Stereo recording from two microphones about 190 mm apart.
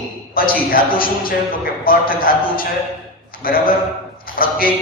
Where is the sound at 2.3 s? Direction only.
50° left (ahead or behind).